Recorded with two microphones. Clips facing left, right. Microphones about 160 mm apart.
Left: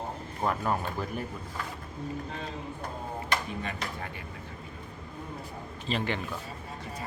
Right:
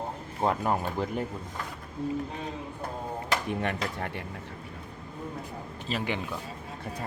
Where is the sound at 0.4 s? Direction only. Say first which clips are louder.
Right 2 dB; 20° right (ahead or behind).